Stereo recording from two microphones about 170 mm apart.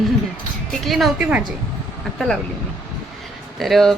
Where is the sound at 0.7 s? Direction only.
Centre (ahead or behind).